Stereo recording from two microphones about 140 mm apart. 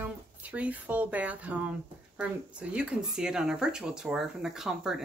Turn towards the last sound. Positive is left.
turn(degrees=-5)  # may be behind; listen again after turning